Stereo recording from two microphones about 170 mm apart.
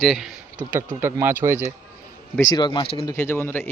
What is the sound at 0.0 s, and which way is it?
Speech, centre (ahead or behind).